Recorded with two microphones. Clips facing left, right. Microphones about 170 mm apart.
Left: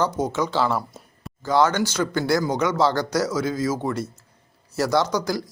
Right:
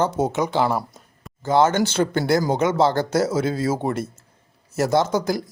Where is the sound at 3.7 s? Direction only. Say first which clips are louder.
Right 2 dB; 25° right (ahead or behind).